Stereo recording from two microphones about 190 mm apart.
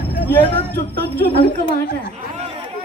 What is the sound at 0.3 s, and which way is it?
Speech, 10° left (ahead or behind).